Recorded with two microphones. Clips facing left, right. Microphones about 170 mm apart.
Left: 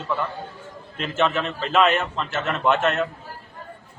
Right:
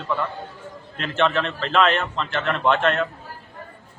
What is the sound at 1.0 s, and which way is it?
A man's voice, 5° left (ahead or behind).